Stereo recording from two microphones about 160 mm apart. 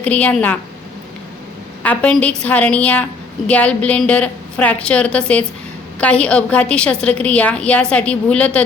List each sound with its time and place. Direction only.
0.0 s a woman's voice: 10° left (ahead or behind)
1.8 s a woman's voice: 10° left (ahead or behind)